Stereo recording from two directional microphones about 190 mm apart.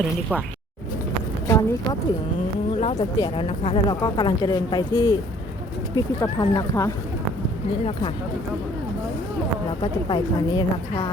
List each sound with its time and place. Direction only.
1.5 s a sound: 20° left (ahead or behind)
2.8 s speech: 25° left (ahead or behind)
6.4 s speech: 20° left (ahead or behind)
9.8 s speech: 25° left (ahead or behind)